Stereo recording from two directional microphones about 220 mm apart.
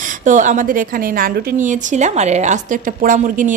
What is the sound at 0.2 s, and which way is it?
A woman's voice, 35° right (ahead or behind).